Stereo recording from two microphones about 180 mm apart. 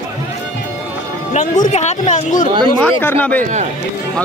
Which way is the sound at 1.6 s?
40° left (ahead or behind).